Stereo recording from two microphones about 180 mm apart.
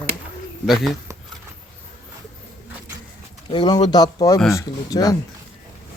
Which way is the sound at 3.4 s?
25° left (ahead or behind).